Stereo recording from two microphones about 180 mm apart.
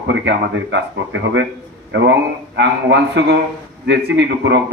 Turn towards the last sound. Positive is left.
turn(degrees=-80)